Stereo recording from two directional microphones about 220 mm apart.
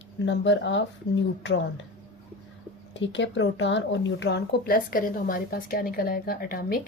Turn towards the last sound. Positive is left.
turn(degrees=45)  # may be behind; listen again after turning